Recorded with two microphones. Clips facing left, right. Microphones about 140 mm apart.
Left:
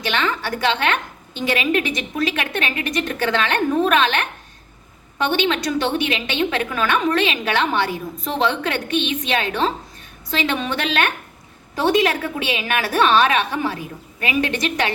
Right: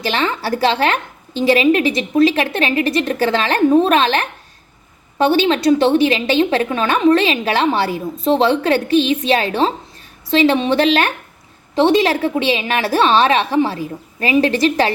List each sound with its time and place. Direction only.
0.0 s a woman's voice: 35° right (ahead or behind)